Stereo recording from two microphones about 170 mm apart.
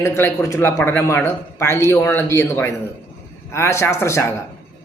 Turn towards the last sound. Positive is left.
turn(degrees=15)  # may be behind; listen again after turning